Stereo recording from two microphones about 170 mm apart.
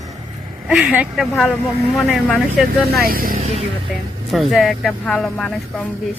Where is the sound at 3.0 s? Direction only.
60° right (ahead or behind).